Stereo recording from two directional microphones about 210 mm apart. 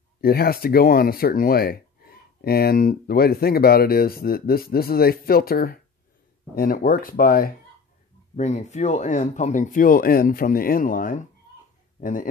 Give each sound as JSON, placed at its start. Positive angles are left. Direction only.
{"t": 0.2, "sound": "speech", "side_deg": 45}
{"t": 8.4, "sound": "speech", "side_deg": 35}